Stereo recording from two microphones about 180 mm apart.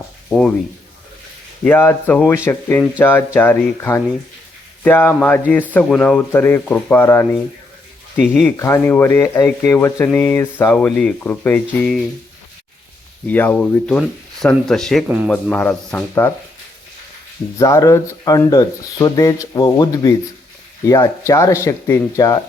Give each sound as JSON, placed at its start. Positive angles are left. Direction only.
{"t": 0.3, "sound": "speech", "side_deg": 5}
{"t": 1.6, "sound": "speech", "side_deg": 10}
{"t": 13.2, "sound": "speech", "side_deg": 10}
{"t": 15.3, "sound": "speech", "side_deg": 5}
{"t": 17.6, "sound": "speech", "side_deg": 15}